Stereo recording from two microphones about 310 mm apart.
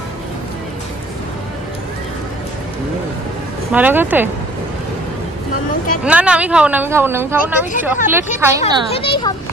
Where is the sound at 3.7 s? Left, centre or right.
Centre.